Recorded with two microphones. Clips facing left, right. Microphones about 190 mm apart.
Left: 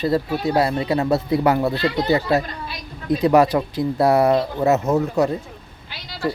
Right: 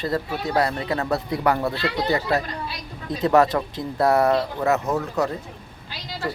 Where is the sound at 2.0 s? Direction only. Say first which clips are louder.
Left 3 dB; 20° left (ahead or behind).